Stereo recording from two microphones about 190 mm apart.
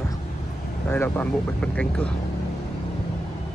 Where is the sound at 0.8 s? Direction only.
10° left (ahead or behind).